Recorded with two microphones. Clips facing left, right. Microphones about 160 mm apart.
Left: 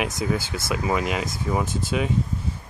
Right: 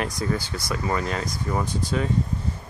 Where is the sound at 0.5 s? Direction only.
25° left (ahead or behind).